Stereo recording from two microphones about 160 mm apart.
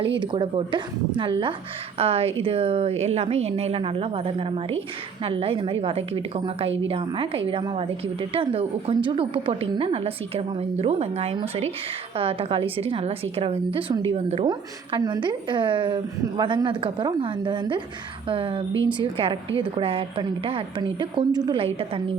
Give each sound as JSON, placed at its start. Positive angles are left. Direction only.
{"t": 0.0, "sound": "a woman's voice", "side_deg": -30}
{"t": 14.9, "sound": "a woman's voice", "side_deg": -30}